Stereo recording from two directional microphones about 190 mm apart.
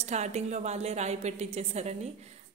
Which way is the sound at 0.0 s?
35° right (ahead or behind).